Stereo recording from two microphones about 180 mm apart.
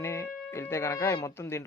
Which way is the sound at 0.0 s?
15° left (ahead or behind).